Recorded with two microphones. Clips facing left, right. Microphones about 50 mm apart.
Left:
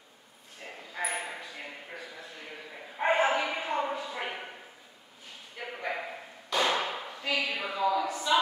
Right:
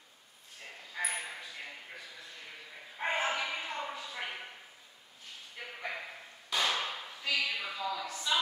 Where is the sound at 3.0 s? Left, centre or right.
Centre.